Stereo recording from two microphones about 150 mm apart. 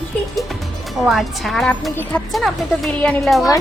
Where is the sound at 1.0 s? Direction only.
Centre (ahead or behind).